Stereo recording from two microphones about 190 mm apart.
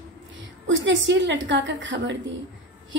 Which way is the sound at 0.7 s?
70° right (ahead or behind).